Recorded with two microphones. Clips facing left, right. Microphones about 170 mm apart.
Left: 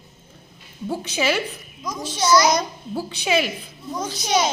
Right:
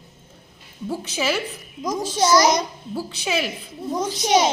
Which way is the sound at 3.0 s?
Centre (ahead or behind).